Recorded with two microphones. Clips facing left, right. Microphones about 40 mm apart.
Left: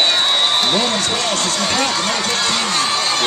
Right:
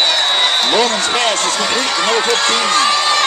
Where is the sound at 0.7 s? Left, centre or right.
Right.